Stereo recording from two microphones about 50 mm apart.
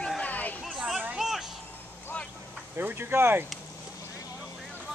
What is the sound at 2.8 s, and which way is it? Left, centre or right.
Speech, right.